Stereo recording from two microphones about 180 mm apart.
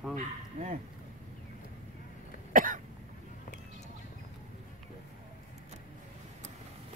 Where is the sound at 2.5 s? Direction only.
50° right (ahead or behind).